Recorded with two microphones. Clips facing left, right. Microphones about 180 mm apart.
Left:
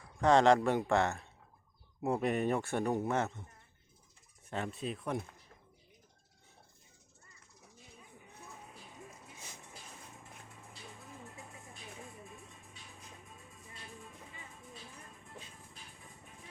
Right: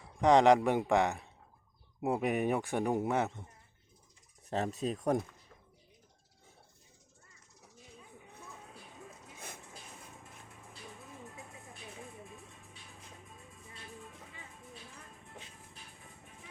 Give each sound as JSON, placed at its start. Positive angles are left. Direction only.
{"t": 0.0, "sound": "speech", "side_deg": -15}
{"t": 4.4, "sound": "speech", "side_deg": -40}